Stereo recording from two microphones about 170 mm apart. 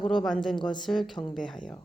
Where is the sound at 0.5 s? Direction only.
25° left (ahead or behind).